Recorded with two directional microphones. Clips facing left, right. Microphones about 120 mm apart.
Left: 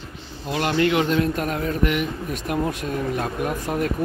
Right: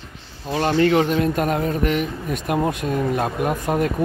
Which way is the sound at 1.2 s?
25° right (ahead or behind).